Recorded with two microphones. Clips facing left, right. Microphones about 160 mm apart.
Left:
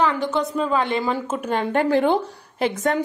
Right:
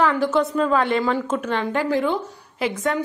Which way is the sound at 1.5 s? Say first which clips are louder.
Left 4 dB; 50° left (ahead or behind).